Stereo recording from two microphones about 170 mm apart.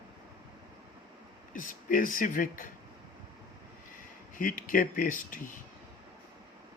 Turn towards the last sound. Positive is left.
turn(degrees=50)  # may be behind; listen again after turning